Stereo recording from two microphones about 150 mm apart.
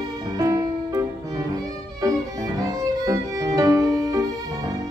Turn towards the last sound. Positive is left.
turn(degrees=-25)  # may be behind; listen again after turning